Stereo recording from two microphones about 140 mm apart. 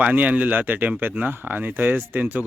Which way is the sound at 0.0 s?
10° right (ahead or behind).